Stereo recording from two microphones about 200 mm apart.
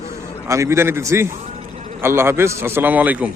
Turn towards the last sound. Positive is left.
turn(degrees=-10)  # may be behind; listen again after turning